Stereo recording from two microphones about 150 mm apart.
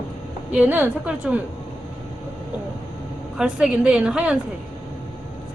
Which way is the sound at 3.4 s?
5° right (ahead or behind).